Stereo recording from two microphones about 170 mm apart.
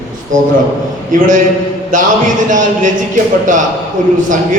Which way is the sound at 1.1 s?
50° right (ahead or behind).